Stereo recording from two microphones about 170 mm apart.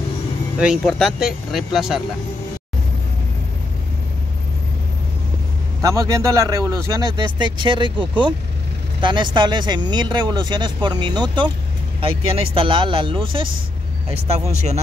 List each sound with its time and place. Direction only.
0.6 s speech: centre (ahead or behind)
5.8 s speech: 20° right (ahead or behind); by 14.8 s 40° right (ahead or behind)